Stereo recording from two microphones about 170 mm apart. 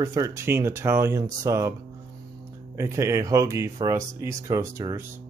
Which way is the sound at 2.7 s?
15° right (ahead or behind).